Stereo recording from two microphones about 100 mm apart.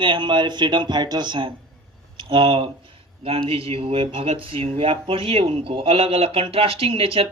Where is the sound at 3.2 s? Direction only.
70° right (ahead or behind).